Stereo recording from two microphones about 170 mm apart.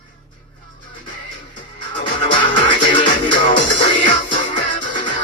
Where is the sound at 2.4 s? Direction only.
30° left (ahead or behind).